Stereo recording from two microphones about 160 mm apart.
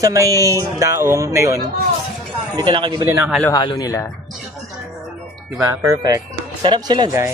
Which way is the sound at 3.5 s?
25° left (ahead or behind).